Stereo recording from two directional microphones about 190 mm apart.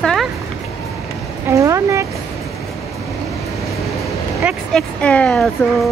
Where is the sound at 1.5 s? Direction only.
15° right (ahead or behind).